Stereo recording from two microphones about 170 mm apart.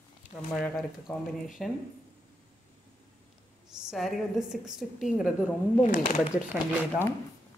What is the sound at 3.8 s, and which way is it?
A woman's voice, centre (ahead or behind).